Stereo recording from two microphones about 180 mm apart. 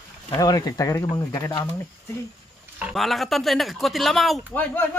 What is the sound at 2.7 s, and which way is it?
Speech, 5° right (ahead or behind).